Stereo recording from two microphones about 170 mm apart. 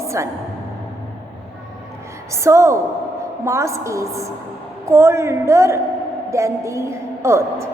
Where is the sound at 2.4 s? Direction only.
15° right (ahead or behind).